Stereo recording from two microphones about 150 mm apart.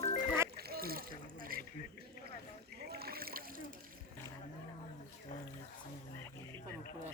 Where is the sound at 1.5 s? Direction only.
75° right (ahead or behind).